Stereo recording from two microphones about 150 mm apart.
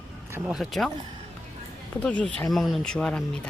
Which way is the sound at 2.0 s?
10° left (ahead or behind).